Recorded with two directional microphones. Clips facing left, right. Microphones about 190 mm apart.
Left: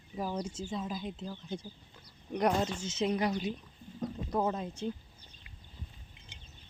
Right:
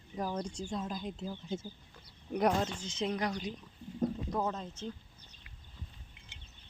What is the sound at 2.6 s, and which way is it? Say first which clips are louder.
Speech: left 2 dB; 5° left (ahead or behind).